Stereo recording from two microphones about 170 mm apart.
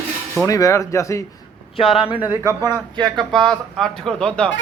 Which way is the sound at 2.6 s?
25° right (ahead or behind).